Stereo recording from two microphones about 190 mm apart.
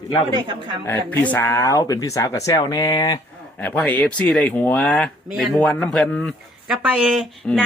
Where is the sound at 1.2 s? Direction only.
10° left (ahead or behind).